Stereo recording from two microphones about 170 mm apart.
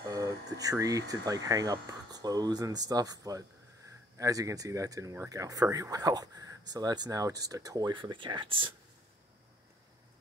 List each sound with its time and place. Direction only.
0.0 s speech: 20° right (ahead or behind)